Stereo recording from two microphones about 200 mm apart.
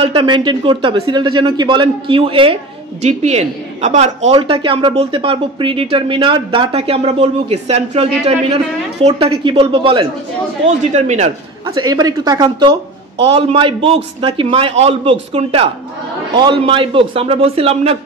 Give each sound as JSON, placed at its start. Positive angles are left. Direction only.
{"t": 0.0, "sound": "a man's voice", "side_deg": -25}
{"t": 11.6, "sound": "a man's voice", "side_deg": -20}